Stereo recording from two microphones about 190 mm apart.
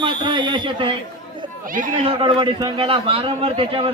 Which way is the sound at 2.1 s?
25° right (ahead or behind).